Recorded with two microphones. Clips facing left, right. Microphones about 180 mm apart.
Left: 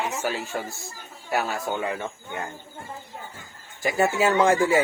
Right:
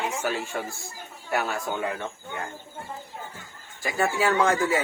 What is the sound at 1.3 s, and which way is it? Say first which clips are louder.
Speech: left 1 dB; 5° left (ahead or behind).